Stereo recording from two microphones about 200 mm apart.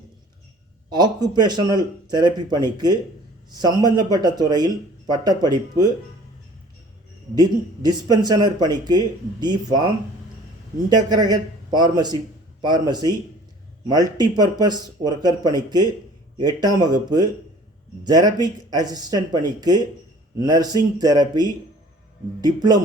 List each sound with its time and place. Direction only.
0.9 s speech: 20° right (ahead or behind)
7.3 s speech: 20° right (ahead or behind)
10.8 s speech: 20° right (ahead or behind)